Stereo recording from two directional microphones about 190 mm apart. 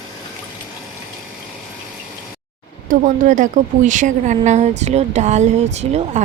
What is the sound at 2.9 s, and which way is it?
A woman's voice, 45° right (ahead or behind).